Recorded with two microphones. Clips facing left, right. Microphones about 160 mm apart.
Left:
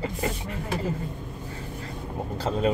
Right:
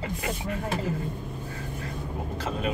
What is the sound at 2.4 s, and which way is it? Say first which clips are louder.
Speech: left 6 dB; 30° left (ahead or behind).